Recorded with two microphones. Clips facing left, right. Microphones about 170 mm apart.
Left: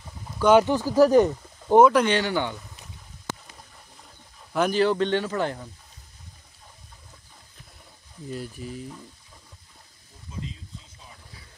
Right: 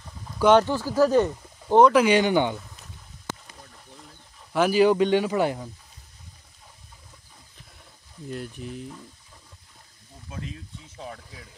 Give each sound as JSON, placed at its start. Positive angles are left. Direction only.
{"t": 0.5, "sound": "speech", "side_deg": 15}
{"t": 2.0, "sound": "speech", "side_deg": -10}
{"t": 4.5, "sound": "speech", "side_deg": -5}
{"t": 8.3, "sound": "speech", "side_deg": 0}
{"t": 10.3, "sound": "speech", "side_deg": -70}